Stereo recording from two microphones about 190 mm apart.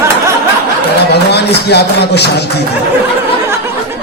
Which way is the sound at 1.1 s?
60° left (ahead or behind).